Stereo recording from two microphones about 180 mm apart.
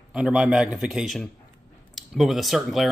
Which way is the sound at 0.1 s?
5° right (ahead or behind).